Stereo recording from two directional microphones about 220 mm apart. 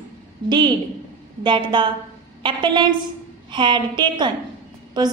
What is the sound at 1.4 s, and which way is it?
A woman's voice, 20° right (ahead or behind).